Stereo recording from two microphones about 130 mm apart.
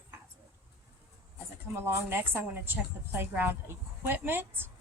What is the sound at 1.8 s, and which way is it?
A woman's voice, 20° right (ahead or behind).